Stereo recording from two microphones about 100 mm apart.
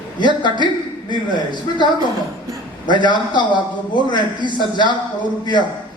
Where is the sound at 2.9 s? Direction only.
50° left (ahead or behind).